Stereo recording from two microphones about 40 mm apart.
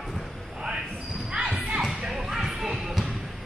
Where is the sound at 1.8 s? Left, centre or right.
Centre.